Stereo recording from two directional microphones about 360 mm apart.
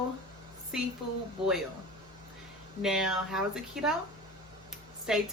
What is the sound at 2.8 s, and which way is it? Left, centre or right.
A woman's voice, centre.